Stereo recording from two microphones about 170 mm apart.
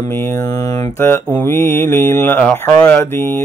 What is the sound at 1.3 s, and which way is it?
Speech, 15° left (ahead or behind).